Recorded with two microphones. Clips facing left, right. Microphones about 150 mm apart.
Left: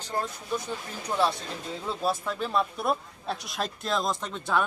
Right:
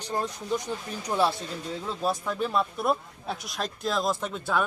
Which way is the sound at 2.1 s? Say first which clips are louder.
Right 1 dB; centre (ahead or behind).